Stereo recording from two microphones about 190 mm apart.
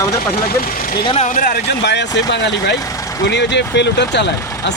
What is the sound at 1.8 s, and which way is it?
Speech, 65° left (ahead or behind).